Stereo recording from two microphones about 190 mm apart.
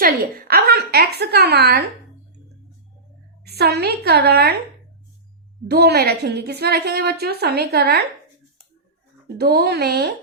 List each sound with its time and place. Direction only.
0.0 s a woman's voice: 55° right (ahead or behind)
3.4 s a woman's voice: 55° right (ahead or behind)
5.6 s a woman's voice: 60° right (ahead or behind)
9.2 s a woman's voice: 55° right (ahead or behind)